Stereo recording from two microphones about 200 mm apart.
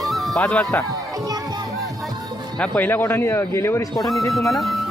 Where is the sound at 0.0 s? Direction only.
Centre (ahead or behind).